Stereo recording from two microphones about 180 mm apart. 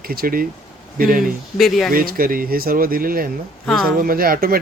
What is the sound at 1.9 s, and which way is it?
Speech, 50° right (ahead or behind).